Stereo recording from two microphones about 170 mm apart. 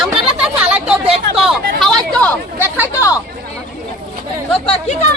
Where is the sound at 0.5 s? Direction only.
5° right (ahead or behind).